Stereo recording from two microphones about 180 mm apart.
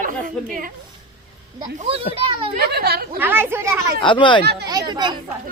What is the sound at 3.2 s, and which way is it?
Speech, 10° right (ahead or behind).